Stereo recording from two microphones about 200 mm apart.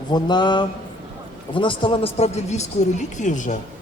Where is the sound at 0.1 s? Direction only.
20° left (ahead or behind).